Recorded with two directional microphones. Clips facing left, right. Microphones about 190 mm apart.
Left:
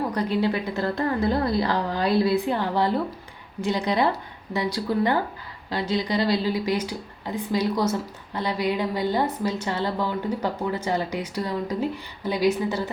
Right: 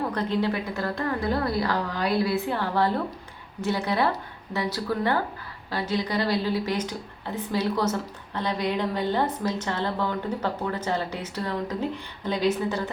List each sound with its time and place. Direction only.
0.1 s a woman's voice: 10° left (ahead or behind)
0.8 s a woman's voice: 25° left (ahead or behind); by 12.9 s 10° left (ahead or behind)